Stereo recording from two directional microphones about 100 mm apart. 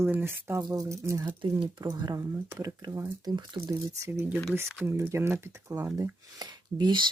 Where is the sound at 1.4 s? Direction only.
55° right (ahead or behind).